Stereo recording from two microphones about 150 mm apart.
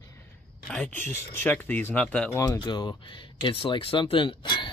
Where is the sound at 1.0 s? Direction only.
15° left (ahead or behind).